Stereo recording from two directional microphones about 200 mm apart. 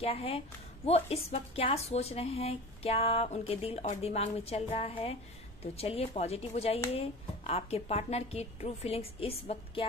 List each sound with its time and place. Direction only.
0.0 s a woman's voice: 30° left (ahead or behind)